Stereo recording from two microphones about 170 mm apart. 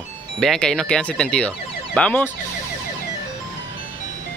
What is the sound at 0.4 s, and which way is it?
Speech, 5° left (ahead or behind).